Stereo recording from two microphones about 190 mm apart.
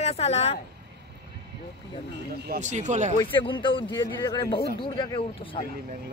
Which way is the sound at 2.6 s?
40° right (ahead or behind).